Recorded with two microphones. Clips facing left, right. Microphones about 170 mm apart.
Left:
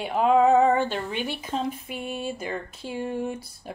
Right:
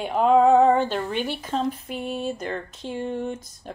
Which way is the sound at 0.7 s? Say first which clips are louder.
Right 3 dB; 50° right (ahead or behind).